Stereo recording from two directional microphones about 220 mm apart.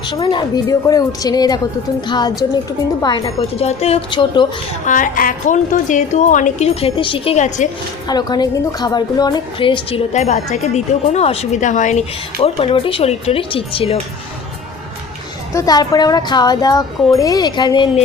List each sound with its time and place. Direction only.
0.1 s a woman's voice: 20° left (ahead or behind)
4.9 s a woman's voice: 35° left (ahead or behind)
8.0 s a woman's voice: 20° left (ahead or behind)
15.5 s speech: 15° left (ahead or behind)